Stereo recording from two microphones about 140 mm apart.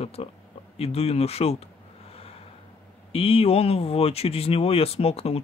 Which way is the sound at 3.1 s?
40° left (ahead or behind).